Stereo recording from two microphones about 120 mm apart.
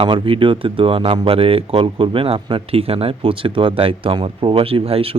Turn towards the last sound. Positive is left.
turn(degrees=-50)  # may be behind; listen again after turning